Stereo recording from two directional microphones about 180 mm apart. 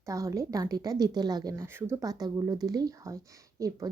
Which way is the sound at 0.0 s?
20° right (ahead or behind).